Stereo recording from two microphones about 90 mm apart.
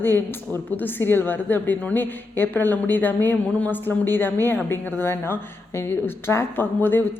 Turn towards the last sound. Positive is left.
turn(degrees=25)  # may be behind; listen again after turning